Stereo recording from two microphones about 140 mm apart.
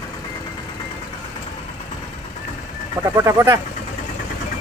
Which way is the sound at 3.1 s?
20° right (ahead or behind).